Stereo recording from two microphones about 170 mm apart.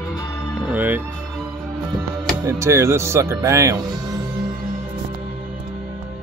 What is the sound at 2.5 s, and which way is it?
Speech, 15° right (ahead or behind).